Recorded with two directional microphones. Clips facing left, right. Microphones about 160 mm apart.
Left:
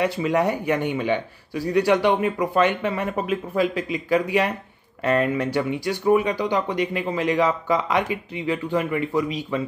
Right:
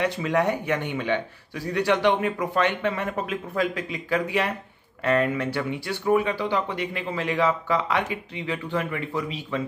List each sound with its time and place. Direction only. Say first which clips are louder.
0.0 s speech: left 2 dB; 10° left (ahead or behind)